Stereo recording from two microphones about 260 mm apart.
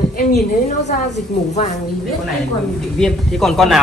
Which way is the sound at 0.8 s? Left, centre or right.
Left.